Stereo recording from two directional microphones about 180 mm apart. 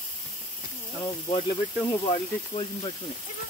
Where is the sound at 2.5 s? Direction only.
20° left (ahead or behind).